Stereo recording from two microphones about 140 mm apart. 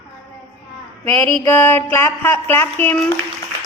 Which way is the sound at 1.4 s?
15° left (ahead or behind).